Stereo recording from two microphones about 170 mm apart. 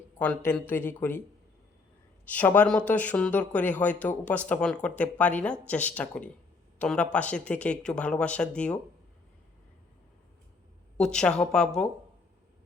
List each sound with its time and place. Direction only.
0.2 s speech: 10° left (ahead or behind)
2.2 s speech: 10° left (ahead or behind)
10.9 s speech: 5° left (ahead or behind)